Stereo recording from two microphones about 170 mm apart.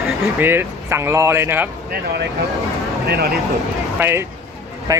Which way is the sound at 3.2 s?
65° right (ahead or behind).